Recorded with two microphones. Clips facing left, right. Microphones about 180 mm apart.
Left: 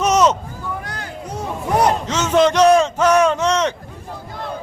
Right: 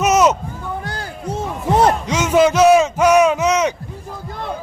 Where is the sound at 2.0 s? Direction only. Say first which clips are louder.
Right 1 dB; 10° right (ahead or behind).